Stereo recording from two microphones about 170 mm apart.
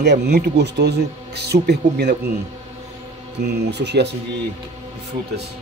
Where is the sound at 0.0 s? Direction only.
75° right (ahead or behind).